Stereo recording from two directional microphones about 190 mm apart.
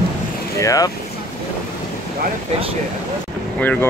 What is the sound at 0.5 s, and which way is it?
Speech, 15° left (ahead or behind).